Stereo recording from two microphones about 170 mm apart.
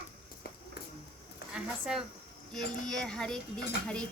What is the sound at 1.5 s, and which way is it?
Speech, 5° right (ahead or behind).